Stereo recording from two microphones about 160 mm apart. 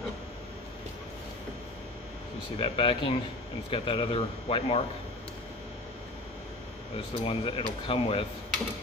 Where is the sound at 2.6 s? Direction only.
35° left (ahead or behind).